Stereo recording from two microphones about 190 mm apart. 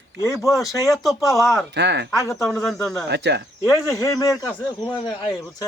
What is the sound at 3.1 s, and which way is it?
Speech, 65° right (ahead or behind).